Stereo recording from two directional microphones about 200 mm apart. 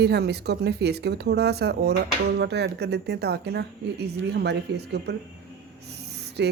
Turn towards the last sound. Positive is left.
turn(degrees=-55)  # may be behind; listen again after turning